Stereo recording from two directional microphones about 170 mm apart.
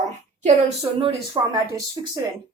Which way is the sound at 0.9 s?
30° right (ahead or behind).